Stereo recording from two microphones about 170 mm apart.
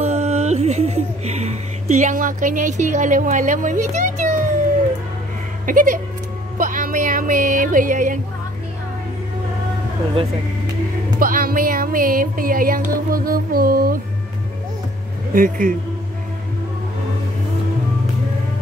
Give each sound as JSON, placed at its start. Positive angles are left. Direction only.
{"t": 0.0, "sound": "music", "side_deg": -40}
{"t": 5.7, "sound": "a man's voice", "side_deg": -50}
{"t": 6.6, "sound": "music", "side_deg": -50}
{"t": 11.1, "sound": "music", "side_deg": -55}
{"t": 15.3, "sound": "a man's voice", "side_deg": -55}